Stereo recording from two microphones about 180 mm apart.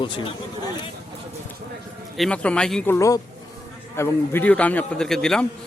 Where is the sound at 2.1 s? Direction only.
5° left (ahead or behind).